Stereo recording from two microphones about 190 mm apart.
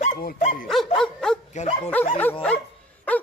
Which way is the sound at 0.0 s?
45° left (ahead or behind).